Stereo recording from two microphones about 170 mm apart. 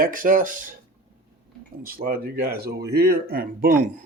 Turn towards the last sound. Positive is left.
turn(degrees=-60)  # may be behind; listen again after turning